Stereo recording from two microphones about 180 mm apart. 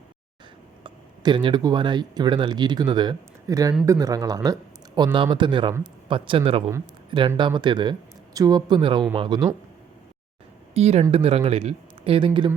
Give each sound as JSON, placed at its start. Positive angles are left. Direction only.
{"t": 0.9, "sound": "speech", "side_deg": -25}
{"t": 10.8, "sound": "a man's voice", "side_deg": -35}